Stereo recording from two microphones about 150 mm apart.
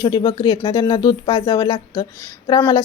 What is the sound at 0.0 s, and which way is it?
Speech, 30° left (ahead or behind).